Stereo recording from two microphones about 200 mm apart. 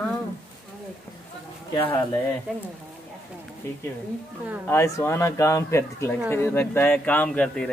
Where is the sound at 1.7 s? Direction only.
25° left (ahead or behind).